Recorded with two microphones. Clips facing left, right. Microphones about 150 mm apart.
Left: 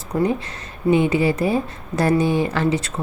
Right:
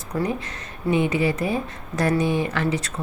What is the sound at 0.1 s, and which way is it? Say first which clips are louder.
Speech: left 5 dB; 25° left (ahead or behind).